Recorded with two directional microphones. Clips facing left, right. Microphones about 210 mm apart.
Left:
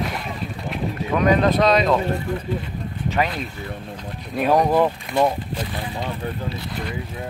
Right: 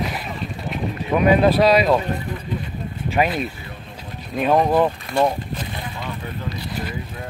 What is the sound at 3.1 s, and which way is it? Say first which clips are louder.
Speech: right 4 dB; 15° right (ahead or behind).